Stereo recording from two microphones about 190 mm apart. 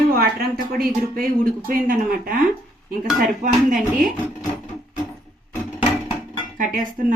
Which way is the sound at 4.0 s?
Centre (ahead or behind).